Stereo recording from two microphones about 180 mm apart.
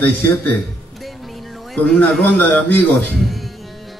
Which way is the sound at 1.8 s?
5° left (ahead or behind).